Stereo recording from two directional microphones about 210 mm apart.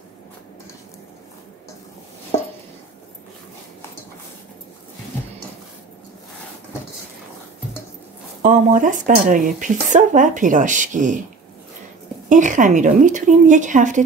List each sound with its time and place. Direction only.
8.4 s speech: 35° right (ahead or behind)
12.3 s speech: 35° right (ahead or behind)